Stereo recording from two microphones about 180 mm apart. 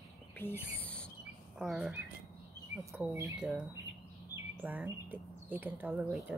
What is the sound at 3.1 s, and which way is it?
Speech, 15° right (ahead or behind).